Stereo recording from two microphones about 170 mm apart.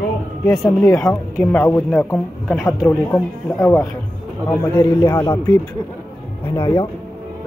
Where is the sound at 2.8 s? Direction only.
15° left (ahead or behind).